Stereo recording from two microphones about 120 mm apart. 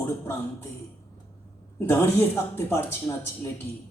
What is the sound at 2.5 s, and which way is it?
Speech, 20° left (ahead or behind).